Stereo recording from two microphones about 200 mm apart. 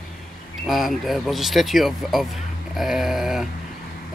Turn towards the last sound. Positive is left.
turn(degrees=0)  # may be behind; listen again after turning